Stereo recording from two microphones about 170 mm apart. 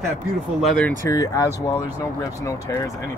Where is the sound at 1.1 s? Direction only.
20° left (ahead or behind).